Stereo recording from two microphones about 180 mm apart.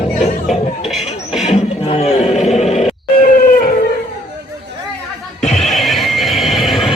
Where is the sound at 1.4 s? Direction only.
35° left (ahead or behind).